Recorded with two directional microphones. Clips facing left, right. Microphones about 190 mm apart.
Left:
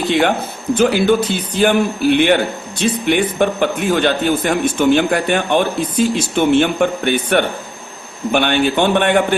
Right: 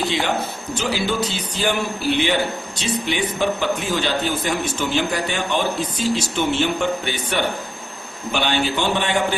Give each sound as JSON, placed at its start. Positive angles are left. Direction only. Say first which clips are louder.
{"t": 0.1, "sound": "a man's voice", "louder": "left 7 dB", "side_deg": 55}